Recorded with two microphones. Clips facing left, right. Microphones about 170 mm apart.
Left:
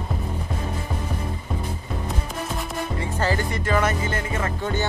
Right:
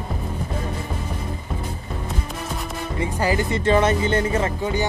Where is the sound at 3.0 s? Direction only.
15° right (ahead or behind).